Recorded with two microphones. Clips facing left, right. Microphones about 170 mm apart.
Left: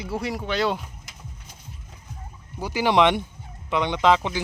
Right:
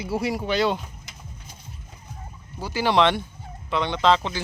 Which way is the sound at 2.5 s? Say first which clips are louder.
Left 1 dB; 15° left (ahead or behind).